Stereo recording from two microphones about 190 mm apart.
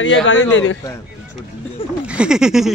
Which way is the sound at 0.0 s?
80° left.